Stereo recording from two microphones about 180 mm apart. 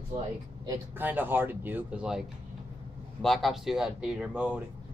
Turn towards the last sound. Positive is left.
turn(degrees=-5)  # may be behind; listen again after turning